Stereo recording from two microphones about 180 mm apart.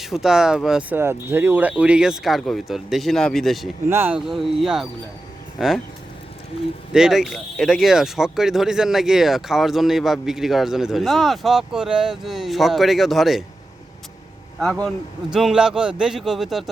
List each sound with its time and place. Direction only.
0.0 s speech: centre (ahead or behind)
3.8 s speech: 10° right (ahead or behind)
6.9 s speech: centre (ahead or behind)
14.8 s speech: centre (ahead or behind)